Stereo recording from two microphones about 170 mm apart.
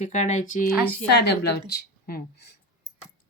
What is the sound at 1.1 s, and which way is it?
Speech, 80° left.